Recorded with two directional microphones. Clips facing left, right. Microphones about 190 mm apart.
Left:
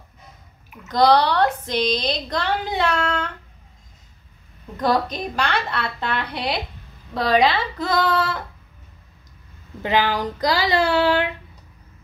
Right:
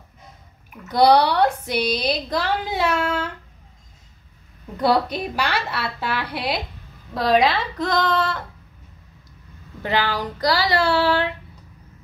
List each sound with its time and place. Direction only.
0.8 s a woman's voice: 10° right (ahead or behind)
1.6 s child singing: 10° right (ahead or behind)
4.7 s a woman's voice: 10° right (ahead or behind)
7.2 s child singing: centre (ahead or behind)
9.8 s speech: 15° left (ahead or behind)